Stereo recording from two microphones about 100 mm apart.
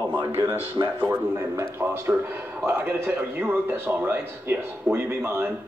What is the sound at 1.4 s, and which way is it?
Speech, 30° right (ahead or behind).